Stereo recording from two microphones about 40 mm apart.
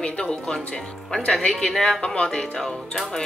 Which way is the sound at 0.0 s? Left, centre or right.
Left.